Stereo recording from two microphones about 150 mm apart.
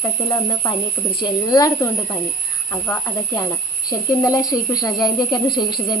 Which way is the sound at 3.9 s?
25° left (ahead or behind).